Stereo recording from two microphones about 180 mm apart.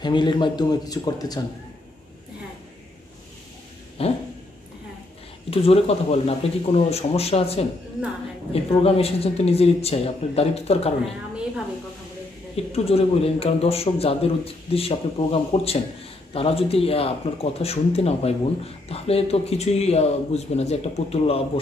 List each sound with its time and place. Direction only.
0.0 s speech: 25° left (ahead or behind)
4.0 s a sound: 35° left (ahead or behind)
5.5 s a man's voice: 35° left (ahead or behind)
8.8 s a man's voice: 35° left (ahead or behind)
12.7 s a man's voice: 35° left (ahead or behind)